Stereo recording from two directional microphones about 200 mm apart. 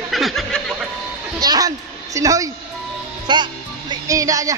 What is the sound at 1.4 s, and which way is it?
A woman's voice, 20° right (ahead or behind).